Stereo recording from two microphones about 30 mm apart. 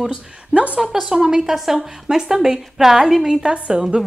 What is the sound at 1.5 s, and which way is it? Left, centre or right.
Speech, centre.